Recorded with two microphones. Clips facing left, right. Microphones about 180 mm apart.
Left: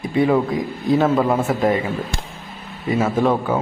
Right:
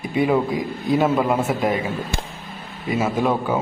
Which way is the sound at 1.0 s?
5° right (ahead or behind).